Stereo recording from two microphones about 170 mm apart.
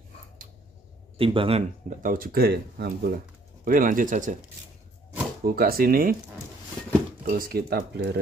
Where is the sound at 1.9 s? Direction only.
50° right (ahead or behind); by 3.1 s 70° right (ahead or behind).